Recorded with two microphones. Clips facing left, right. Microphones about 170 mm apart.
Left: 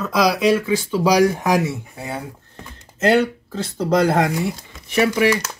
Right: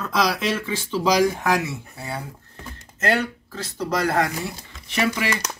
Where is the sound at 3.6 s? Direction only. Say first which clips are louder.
Left 7 dB; 30° left (ahead or behind).